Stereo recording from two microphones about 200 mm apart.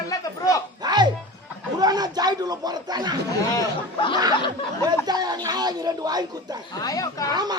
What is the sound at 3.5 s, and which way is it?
Speech, 25° left (ahead or behind).